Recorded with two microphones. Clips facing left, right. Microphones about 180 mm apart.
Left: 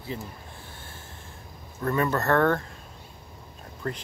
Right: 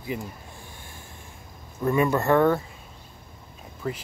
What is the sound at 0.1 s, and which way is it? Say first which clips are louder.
Speech: right 4 dB; 15° right (ahead or behind).